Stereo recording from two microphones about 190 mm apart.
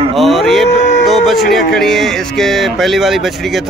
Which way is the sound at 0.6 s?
70° left (ahead or behind).